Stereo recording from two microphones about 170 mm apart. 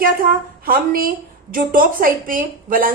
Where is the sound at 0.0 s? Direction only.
60° right (ahead or behind).